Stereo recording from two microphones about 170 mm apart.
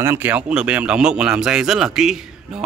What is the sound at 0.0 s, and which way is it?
Speech, 15° right (ahead or behind).